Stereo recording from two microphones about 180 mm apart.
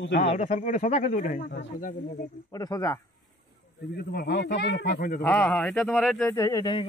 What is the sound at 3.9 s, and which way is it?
A man's voice, 65° left (ahead or behind).